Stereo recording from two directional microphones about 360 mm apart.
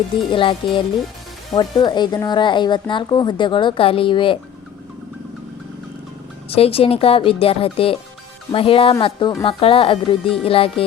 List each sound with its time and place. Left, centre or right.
0.3 s speech: centre
6.5 s speech: centre